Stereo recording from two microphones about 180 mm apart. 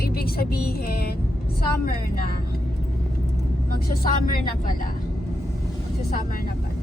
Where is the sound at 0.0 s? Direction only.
55° left (ahead or behind).